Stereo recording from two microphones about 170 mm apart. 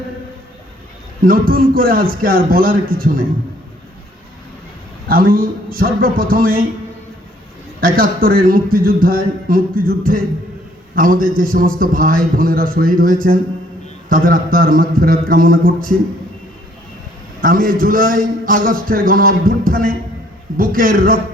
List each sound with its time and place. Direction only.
1.2 s a man's voice: 55° right (ahead or behind)
5.0 s a man's voice: 60° right (ahead or behind)
7.8 s a man's voice: 60° right (ahead or behind)
10.9 s a man's voice: 55° right (ahead or behind)
17.4 s a man's voice: 60° right (ahead or behind)